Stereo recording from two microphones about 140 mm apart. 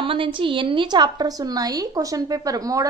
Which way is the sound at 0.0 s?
40° right (ahead or behind).